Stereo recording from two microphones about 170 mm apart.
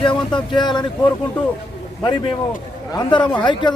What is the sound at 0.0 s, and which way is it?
Speech, 25° left (ahead or behind).